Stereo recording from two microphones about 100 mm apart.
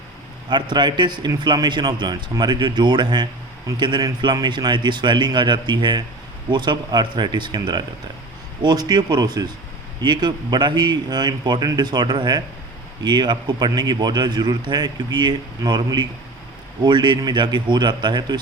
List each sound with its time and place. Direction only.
0.5 s a man's voice: 50° right (ahead or behind)